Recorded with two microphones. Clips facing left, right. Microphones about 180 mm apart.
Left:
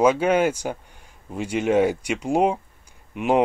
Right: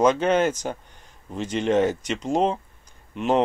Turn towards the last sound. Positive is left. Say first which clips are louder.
# left 1 dB
turn(degrees=10)  # may be behind; listen again after turning